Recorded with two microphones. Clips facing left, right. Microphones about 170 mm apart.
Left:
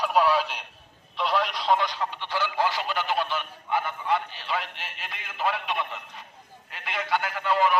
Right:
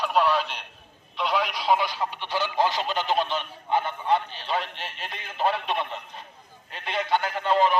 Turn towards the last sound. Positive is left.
turn(degrees=-25)  # may be behind; listen again after turning